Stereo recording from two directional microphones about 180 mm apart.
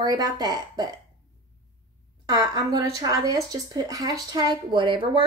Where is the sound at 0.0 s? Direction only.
20° right (ahead or behind).